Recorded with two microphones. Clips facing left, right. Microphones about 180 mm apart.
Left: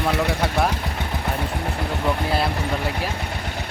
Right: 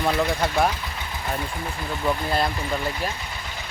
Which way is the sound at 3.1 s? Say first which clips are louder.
Left 6 dB; 60° left (ahead or behind).